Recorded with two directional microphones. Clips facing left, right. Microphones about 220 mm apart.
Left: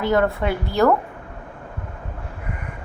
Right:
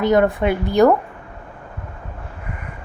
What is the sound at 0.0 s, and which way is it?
Speech, 20° right (ahead or behind).